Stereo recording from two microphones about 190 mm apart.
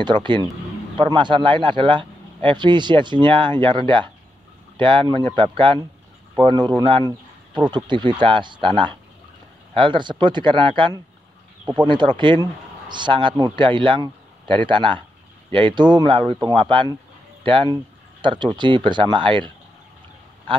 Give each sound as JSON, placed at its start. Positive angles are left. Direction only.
{"t": 0.0, "sound": "speech", "side_deg": -25}
{"t": 7.7, "sound": "speech", "side_deg": -25}